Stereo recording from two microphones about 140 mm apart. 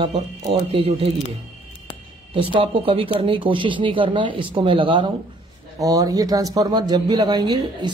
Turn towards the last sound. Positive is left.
turn(degrees=-30)  # may be behind; listen again after turning